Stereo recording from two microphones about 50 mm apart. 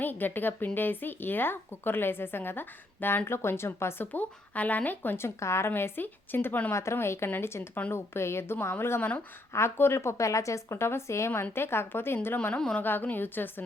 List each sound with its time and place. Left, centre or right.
0.0 s speech: left
3.2 s a woman's voice: left
4.0 s speech: left
5.1 s a woman's voice: left
6.9 s a woman's voice: left
9.0 s speech: left
9.5 s speech: left
9.7 s speech: left
11.5 s speech: left
12.8 s speech: left